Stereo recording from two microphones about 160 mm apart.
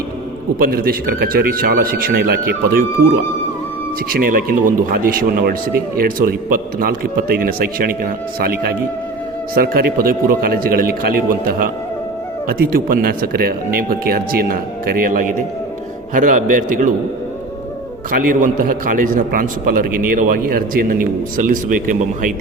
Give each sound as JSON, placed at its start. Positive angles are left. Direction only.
{"t": 0.6, "sound": "speech", "side_deg": -65}
{"t": 4.1, "sound": "a man's voice", "side_deg": -65}
{"t": 18.1, "sound": "a man's voice", "side_deg": -55}